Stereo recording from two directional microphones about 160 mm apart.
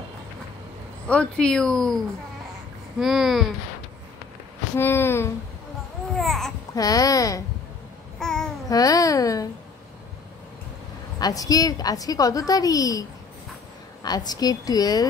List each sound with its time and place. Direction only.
1.0 s speech: 5° left (ahead or behind)
3.0 s speech: centre (ahead or behind)
4.7 s a sound: 15° left (ahead or behind)
6.1 s speech: centre (ahead or behind)
6.7 s a woman's voice: 20° left (ahead or behind)
8.2 s babbling: 5° left (ahead or behind)
8.6 s a woman's voice: 20° left (ahead or behind)
11.1 s a woman's voice: 25° left (ahead or behind)
14.0 s a woman's voice: 25° left (ahead or behind)